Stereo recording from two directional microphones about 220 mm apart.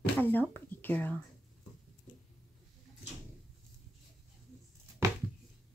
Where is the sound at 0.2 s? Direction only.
10° left (ahead or behind).